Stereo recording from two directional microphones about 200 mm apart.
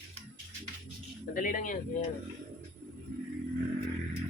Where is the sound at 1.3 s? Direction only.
45° left (ahead or behind).